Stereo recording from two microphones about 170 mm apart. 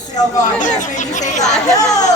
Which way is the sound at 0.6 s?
45° left (ahead or behind).